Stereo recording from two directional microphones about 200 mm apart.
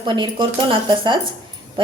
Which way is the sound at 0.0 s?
25° right (ahead or behind).